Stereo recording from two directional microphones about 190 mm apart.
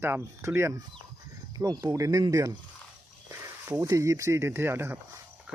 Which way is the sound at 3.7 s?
15° right (ahead or behind).